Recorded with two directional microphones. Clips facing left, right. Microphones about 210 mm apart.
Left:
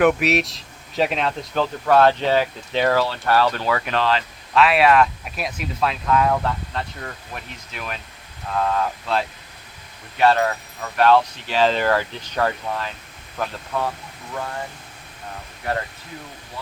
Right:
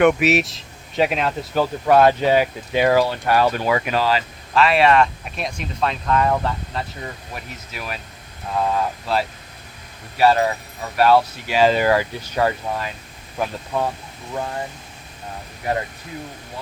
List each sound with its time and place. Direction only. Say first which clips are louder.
0.0 s speech: right 2 dB; centre (ahead or behind); by 13.9 s 20° right (ahead or behind)